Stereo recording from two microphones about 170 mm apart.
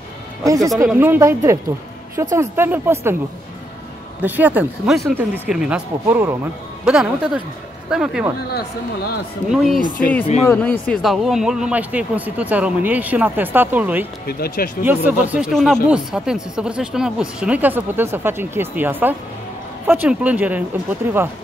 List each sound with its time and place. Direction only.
0.8 s speech: 10° right (ahead or behind)
4.2 s speech: 10° right (ahead or behind)
6.8 s speech: centre (ahead or behind)
9.5 s speech: centre (ahead or behind)
9.8 s speech: 55° left (ahead or behind)
10.4 s speech: 10° left (ahead or behind); by 14.0 s 10° right (ahead or behind)
14.2 s speech: 60° left (ahead or behind)
14.8 s speech: 10° right (ahead or behind)